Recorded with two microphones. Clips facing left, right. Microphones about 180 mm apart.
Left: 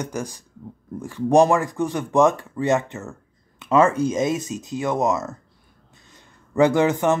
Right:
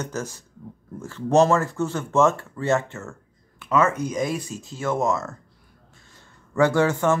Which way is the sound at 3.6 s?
30° left (ahead or behind).